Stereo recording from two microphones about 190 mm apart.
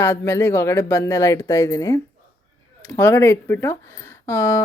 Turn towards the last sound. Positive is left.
turn(degrees=15)  # may be behind; listen again after turning